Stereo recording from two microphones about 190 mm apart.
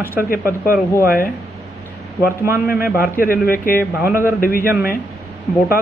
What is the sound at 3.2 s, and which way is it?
Speech, 50° left (ahead or behind).